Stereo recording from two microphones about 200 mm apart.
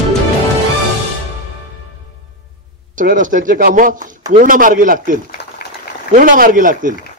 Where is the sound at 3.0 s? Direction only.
40° right (ahead or behind).